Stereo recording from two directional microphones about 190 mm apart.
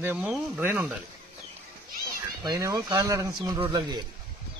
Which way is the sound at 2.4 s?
15° right (ahead or behind).